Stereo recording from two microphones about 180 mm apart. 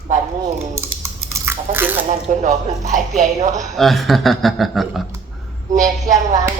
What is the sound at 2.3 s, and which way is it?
Speech, 50° right (ahead or behind).